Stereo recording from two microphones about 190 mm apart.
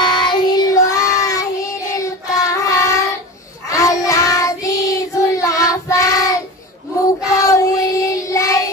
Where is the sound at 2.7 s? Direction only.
15° left (ahead or behind).